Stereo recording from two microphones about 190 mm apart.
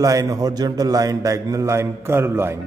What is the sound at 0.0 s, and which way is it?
A man's voice, 15° right (ahead or behind).